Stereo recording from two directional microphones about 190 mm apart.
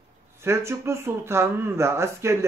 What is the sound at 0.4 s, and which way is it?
Speech, 15° right (ahead or behind).